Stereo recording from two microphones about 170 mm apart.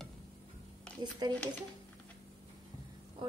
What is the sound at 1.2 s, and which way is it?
Speech, 25° right (ahead or behind).